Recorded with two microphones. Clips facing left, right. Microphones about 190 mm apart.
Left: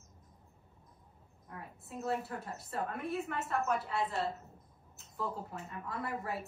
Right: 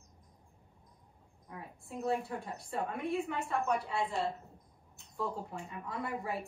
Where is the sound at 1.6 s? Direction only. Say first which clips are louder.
Right 3 dB; centre (ahead or behind).